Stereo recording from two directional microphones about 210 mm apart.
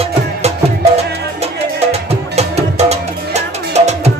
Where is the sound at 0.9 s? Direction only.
30° right (ahead or behind).